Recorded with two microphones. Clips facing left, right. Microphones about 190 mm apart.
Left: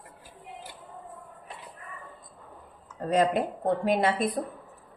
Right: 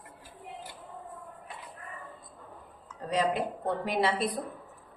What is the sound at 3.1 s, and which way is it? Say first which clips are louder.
A woman's voice: left 4 dB; 50° left (ahead or behind).